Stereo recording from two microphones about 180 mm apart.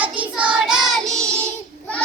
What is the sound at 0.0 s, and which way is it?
Child singing, 5° right (ahead or behind).